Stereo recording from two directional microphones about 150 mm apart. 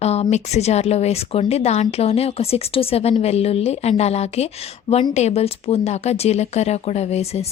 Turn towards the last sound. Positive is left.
turn(degrees=45)  # may be behind; listen again after turning